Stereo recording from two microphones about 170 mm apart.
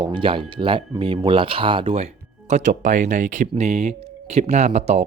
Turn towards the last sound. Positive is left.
turn(degrees=-40)  # may be behind; listen again after turning